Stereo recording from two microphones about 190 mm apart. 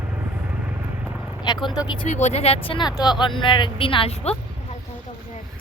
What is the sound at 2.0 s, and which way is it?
A woman's voice, 35° left (ahead or behind).